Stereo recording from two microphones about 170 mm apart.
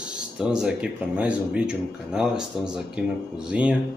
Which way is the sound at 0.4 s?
5° right (ahead or behind).